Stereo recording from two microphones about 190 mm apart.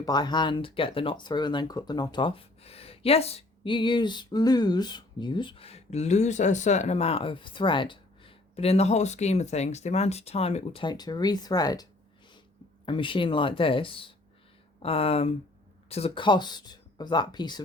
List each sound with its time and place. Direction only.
0.0 s speech: 20° left (ahead or behind)